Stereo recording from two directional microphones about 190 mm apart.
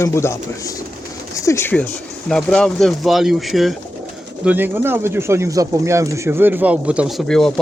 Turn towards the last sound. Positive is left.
turn(degrees=0)  # may be behind; listen again after turning